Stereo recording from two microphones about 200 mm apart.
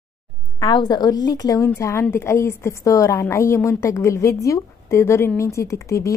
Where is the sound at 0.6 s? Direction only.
20° left (ahead or behind).